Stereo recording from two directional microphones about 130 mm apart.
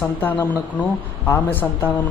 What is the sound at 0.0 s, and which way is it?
Speech, 15° left (ahead or behind).